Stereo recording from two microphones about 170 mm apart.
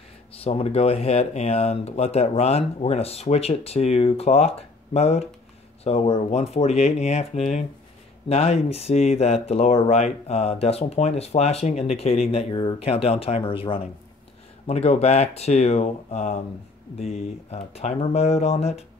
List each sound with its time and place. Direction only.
0.4 s speech: 35° left (ahead or behind)